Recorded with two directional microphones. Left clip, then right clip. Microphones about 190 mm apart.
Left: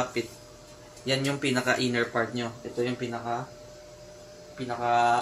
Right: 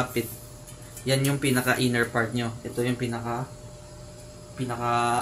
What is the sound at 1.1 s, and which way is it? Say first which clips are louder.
Speech: right 2 dB; 25° left (ahead or behind).